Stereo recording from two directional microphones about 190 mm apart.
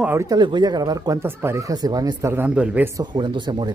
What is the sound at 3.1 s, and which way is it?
Speech, 25° right (ahead or behind).